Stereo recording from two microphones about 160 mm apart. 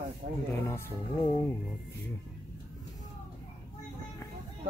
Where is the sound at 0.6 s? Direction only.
15° left (ahead or behind).